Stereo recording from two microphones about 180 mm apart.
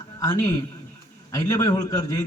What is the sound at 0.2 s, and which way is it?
A man's voice, 20° left (ahead or behind).